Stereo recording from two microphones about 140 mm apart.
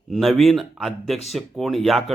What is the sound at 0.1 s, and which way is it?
Speech, centre (ahead or behind).